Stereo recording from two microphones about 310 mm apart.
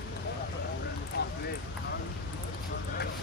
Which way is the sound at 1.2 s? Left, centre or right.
Left.